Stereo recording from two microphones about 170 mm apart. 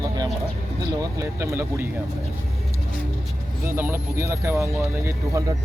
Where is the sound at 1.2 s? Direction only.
15° right (ahead or behind).